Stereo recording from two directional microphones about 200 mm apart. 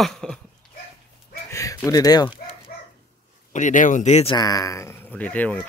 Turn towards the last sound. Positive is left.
turn(degrees=5)  # may be behind; listen again after turning